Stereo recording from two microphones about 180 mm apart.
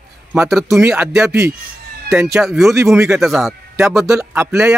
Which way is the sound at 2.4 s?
Centre (ahead or behind).